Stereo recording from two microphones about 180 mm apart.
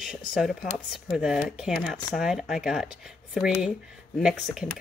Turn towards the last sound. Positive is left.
turn(degrees=0)  # may be behind; listen again after turning